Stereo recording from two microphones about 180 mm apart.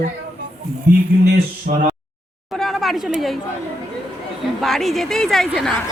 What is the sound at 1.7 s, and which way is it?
Speech, 45° right (ahead or behind).